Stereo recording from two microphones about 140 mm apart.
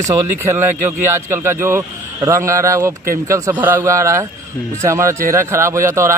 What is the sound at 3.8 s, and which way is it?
Speech, 20° right (ahead or behind).